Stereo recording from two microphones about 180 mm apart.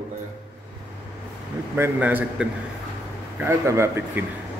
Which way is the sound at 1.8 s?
10° right (ahead or behind).